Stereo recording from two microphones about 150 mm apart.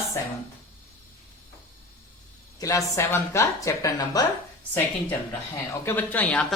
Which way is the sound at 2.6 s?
20° left (ahead or behind).